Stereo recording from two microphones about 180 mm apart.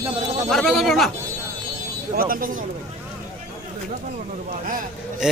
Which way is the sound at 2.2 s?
50° right (ahead or behind).